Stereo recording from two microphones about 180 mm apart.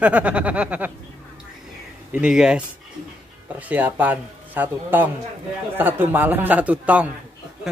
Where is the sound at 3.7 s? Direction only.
10° right (ahead or behind).